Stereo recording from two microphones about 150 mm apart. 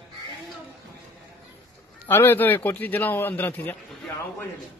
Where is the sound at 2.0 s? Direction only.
15° left (ahead or behind).